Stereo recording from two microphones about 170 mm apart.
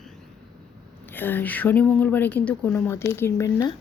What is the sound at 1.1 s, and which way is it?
Speech, 10° left (ahead or behind).